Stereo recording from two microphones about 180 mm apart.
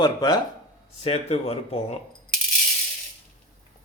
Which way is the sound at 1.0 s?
35° left (ahead or behind).